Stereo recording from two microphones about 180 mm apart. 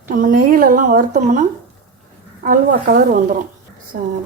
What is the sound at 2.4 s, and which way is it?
Speech, 50° right (ahead or behind).